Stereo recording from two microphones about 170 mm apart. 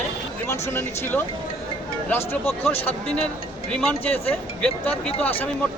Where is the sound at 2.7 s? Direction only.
35° left (ahead or behind).